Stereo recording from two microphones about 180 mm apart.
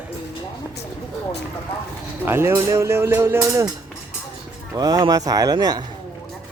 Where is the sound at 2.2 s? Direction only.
15° right (ahead or behind).